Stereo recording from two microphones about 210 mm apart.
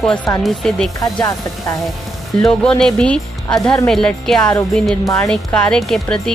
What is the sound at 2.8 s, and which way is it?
Speech, 5° left (ahead or behind).